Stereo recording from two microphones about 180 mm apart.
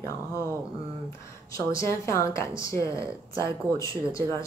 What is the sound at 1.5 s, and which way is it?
Speech, 15° left (ahead or behind).